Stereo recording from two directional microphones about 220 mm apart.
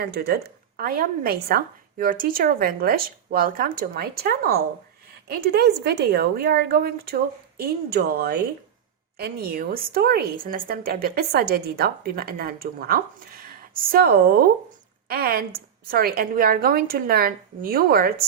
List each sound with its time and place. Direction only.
0.0 s a woman's voice: 45° right (ahead or behind)